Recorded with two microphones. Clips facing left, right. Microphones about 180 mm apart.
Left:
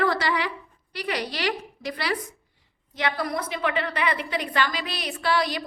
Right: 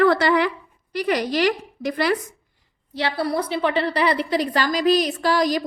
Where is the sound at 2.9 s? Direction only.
30° right (ahead or behind).